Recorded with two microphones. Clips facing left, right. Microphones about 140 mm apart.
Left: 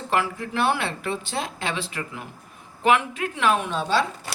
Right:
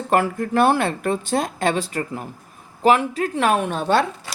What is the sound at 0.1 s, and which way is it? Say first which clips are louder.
Speech: right 6 dB; 50° right (ahead or behind).